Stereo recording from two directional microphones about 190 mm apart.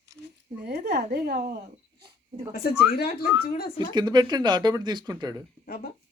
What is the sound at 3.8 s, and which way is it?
Speech, 25° right (ahead or behind).